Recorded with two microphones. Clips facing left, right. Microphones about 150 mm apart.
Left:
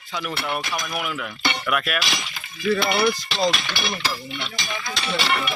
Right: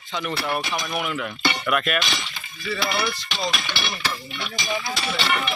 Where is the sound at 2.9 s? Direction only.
45° left (ahead or behind).